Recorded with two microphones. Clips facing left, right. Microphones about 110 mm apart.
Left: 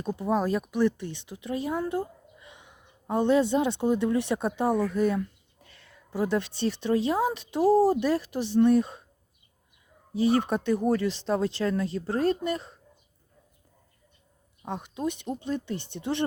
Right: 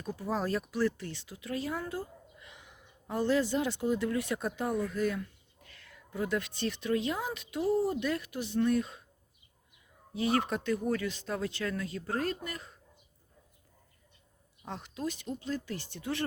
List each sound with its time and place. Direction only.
0.0 s speech: 25° left (ahead or behind)
0.3 s a woman's voice: 10° left (ahead or behind); by 9.0 s 30° left (ahead or behind)
10.3 s speech: 25° left (ahead or behind)
14.6 s speech: 15° left (ahead or behind)